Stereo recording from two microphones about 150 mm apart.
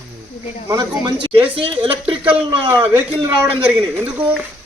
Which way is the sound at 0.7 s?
30° right (ahead or behind).